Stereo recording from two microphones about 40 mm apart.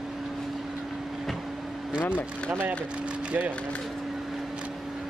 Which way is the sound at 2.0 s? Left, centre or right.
Left.